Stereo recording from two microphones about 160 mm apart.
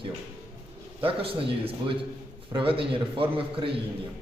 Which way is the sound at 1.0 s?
35° right (ahead or behind).